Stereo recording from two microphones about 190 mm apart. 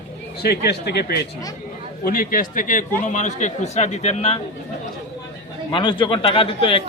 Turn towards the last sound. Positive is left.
turn(degrees=25)  # may be behind; listen again after turning